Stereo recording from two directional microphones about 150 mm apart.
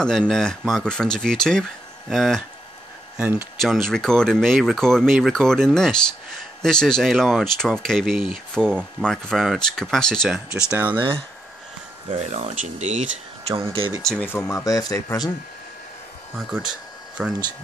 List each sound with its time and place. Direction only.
0.3 s speech: 5° left (ahead or behind)
3.7 s speech: centre (ahead or behind)
10.7 s speech: 10° right (ahead or behind)
12.2 s speech: 50° right (ahead or behind)
13.6 s speech: 35° right (ahead or behind)
14.0 s speech: 5° left (ahead or behind)
14.3 s speech: 20° left (ahead or behind)
16.3 s speech: 5° right (ahead or behind)